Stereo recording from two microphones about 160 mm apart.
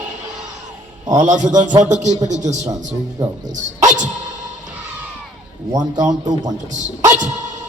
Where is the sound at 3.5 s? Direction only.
50° right (ahead or behind).